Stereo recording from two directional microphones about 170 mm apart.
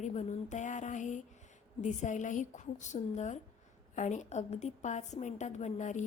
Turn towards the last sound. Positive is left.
turn(degrees=45)  # may be behind; listen again after turning